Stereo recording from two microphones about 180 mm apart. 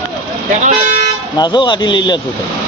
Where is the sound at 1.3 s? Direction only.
25° left (ahead or behind).